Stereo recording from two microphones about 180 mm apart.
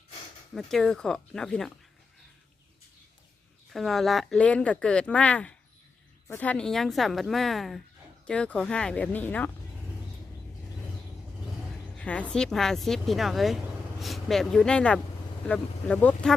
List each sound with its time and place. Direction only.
0.5 s speech: 5° left (ahead or behind)
3.7 s speech: centre (ahead or behind)
11.9 s speech: 5° left (ahead or behind)